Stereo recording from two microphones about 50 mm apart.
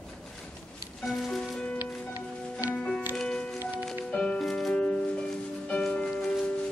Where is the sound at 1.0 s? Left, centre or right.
Centre.